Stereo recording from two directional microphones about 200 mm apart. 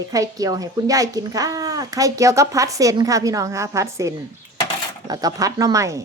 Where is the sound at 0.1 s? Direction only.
15° right (ahead or behind).